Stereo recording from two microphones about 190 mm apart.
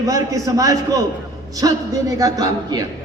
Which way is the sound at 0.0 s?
20° right (ahead or behind).